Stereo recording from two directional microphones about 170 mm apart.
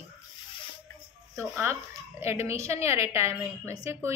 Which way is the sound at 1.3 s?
15° right (ahead or behind).